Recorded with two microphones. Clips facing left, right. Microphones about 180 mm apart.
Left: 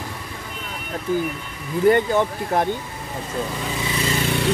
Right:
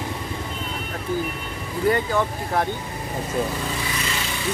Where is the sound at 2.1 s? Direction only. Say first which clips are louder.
Left 3 dB; 20° left (ahead or behind).